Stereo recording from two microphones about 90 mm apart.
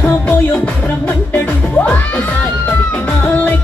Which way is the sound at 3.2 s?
20° left (ahead or behind).